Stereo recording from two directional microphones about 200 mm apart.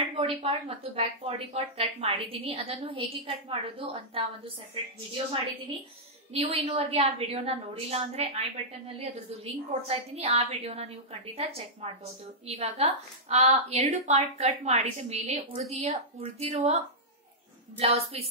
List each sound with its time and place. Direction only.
0.1 s a woman's voice: 30° right (ahead or behind)
17.7 s speech: 30° right (ahead or behind)